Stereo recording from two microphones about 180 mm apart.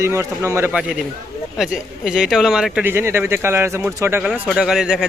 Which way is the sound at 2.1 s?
Centre (ahead or behind).